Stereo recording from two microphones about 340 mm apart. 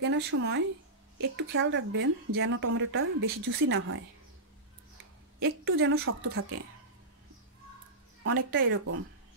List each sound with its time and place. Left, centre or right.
0.0 s speech: right
5.4 s speech: right
8.2 s speech: right